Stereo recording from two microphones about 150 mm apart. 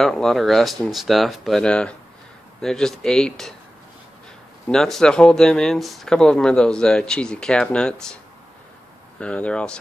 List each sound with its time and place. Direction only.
0.0 s speech: centre (ahead or behind)
4.6 s speech: 5° left (ahead or behind)
9.2 s speech: 10° left (ahead or behind)